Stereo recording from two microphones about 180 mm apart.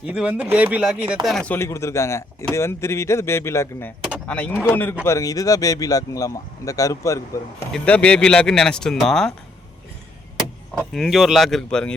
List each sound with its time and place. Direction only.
0.1 s speech: 5° right (ahead or behind); by 3.9 s 15° left (ahead or behind)
4.0 s vehicle: 5° left (ahead or behind)
4.7 s speech: 10° left (ahead or behind)
7.7 s speech: 5° left (ahead or behind)
10.8 s speech: centre (ahead or behind)